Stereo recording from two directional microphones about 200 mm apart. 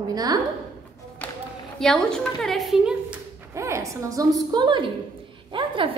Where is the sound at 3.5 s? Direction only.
15° right (ahead or behind).